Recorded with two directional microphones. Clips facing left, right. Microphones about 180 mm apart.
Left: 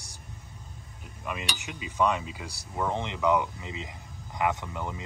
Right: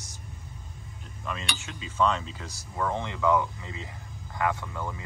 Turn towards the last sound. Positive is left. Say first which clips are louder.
# even
turn(degrees=20)  # may be behind; listen again after turning